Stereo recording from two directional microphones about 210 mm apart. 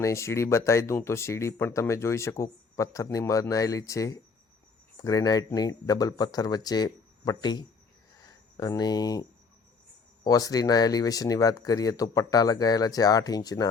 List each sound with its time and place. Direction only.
0.0 s speech: 15° left (ahead or behind)
10.2 s speech: 15° left (ahead or behind)